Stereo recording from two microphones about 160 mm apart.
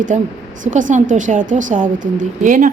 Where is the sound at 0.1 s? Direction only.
50° right (ahead or behind).